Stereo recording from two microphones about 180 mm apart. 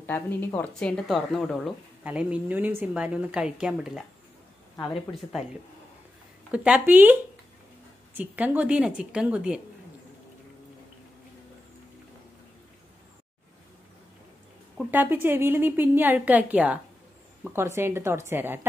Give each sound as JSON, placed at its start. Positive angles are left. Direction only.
{"t": 0.0, "sound": "speech", "side_deg": 10}
{"t": 4.7, "sound": "speech", "side_deg": 25}
{"t": 6.5, "sound": "a woman's voice", "side_deg": -5}
{"t": 14.8, "sound": "a woman's voice", "side_deg": -10}